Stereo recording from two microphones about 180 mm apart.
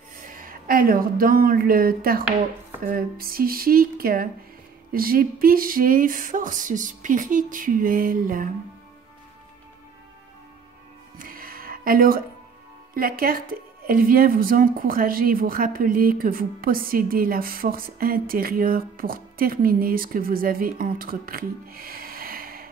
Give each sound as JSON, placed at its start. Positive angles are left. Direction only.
{"t": 0.2, "sound": "speech", "side_deg": -50}
{"t": 11.1, "sound": "music", "side_deg": -55}
{"t": 12.9, "sound": "speech", "side_deg": -55}